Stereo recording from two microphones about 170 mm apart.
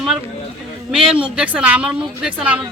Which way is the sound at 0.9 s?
5° right (ahead or behind).